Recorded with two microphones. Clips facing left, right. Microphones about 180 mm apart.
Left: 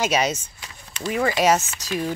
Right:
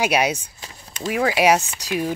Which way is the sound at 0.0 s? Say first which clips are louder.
Right 2 dB; 10° right (ahead or behind).